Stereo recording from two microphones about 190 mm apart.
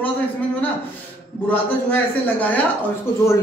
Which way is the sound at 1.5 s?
10° left (ahead or behind).